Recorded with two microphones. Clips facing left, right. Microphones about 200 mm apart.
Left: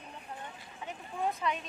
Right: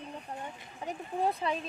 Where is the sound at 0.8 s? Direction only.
35° right (ahead or behind).